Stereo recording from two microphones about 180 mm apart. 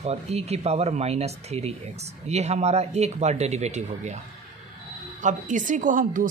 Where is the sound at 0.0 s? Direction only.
35° right (ahead or behind).